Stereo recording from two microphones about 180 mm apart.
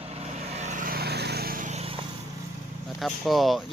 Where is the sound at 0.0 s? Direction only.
35° right (ahead or behind).